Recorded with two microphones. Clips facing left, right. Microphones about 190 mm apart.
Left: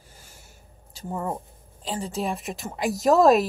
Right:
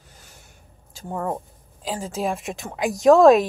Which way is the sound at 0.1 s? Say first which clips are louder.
Right 2 dB; 10° left (ahead or behind).